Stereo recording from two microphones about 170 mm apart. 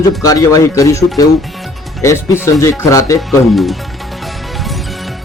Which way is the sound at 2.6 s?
15° left (ahead or behind).